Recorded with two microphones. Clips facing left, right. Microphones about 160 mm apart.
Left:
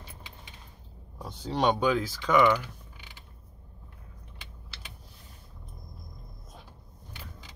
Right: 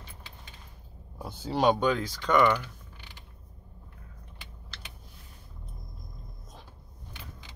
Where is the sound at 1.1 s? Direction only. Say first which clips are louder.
Right 1 dB; 5° right (ahead or behind).